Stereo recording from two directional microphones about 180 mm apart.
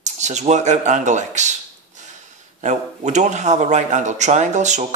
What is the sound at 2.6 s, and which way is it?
Speech, 40° right (ahead or behind).